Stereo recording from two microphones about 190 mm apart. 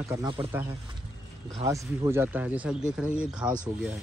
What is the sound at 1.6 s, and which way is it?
Speech, 15° right (ahead or behind).